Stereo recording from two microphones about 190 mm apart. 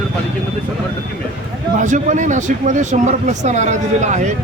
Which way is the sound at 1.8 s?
40° right (ahead or behind).